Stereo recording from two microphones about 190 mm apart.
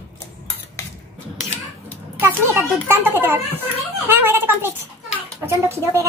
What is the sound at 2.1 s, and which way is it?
A child's voice, 10° right (ahead or behind).